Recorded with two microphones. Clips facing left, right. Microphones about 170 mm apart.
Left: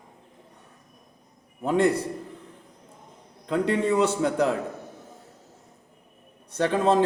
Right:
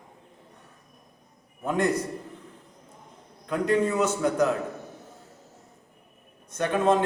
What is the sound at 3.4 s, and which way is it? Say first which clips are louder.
A man's voice: even; 30° left (ahead or behind).